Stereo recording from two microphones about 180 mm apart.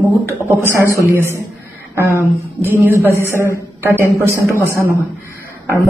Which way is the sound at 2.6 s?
10° right (ahead or behind).